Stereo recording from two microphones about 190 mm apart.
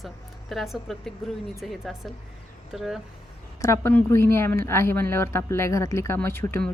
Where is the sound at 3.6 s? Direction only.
15° left (ahead or behind).